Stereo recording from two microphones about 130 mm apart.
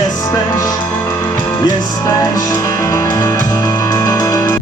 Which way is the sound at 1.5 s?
35° left (ahead or behind).